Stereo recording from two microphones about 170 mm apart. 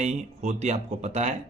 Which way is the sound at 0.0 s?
40° right (ahead or behind).